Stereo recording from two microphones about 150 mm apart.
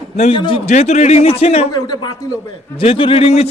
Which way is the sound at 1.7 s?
25° left (ahead or behind).